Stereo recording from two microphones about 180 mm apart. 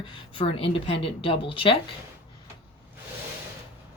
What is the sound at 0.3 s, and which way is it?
Speech, 30° left (ahead or behind).